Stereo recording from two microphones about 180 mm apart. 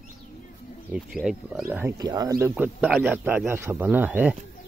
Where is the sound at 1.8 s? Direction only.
20° right (ahead or behind).